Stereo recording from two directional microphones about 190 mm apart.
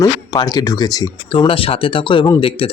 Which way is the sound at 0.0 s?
20° left (ahead or behind).